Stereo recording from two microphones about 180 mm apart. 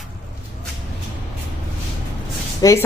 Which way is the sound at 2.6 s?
20° left (ahead or behind).